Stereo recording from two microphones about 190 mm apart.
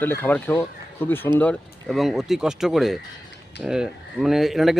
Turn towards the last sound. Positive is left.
turn(degrees=0)  # may be behind; listen again after turning